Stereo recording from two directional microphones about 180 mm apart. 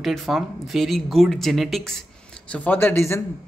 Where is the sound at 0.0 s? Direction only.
Centre (ahead or behind).